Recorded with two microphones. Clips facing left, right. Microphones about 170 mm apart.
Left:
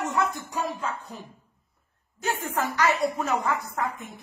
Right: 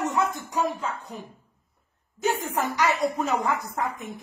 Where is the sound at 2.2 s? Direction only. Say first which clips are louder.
Right 2 dB; 15° right (ahead or behind).